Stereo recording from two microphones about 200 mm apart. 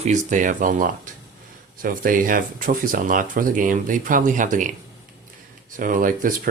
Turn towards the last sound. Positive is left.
turn(degrees=-45)  # may be behind; listen again after turning